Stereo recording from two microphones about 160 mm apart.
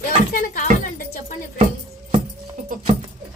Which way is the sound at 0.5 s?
60° left (ahead or behind).